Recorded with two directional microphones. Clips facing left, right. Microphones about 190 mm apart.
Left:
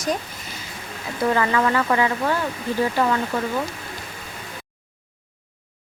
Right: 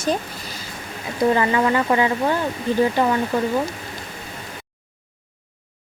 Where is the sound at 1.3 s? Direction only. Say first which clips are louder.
Right 2 dB; 20° right (ahead or behind).